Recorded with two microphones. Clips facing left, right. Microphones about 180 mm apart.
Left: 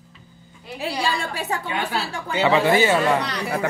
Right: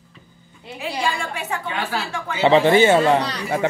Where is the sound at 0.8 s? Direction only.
35° left (ahead or behind).